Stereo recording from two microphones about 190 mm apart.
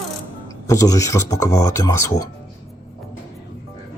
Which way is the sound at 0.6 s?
20° left (ahead or behind).